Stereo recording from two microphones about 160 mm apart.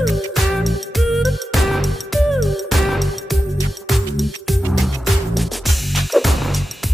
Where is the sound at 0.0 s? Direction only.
Centre (ahead or behind).